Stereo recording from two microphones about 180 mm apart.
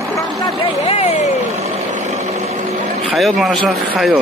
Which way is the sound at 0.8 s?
35° left (ahead or behind).